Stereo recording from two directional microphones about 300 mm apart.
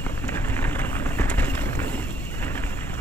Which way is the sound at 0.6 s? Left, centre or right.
Centre.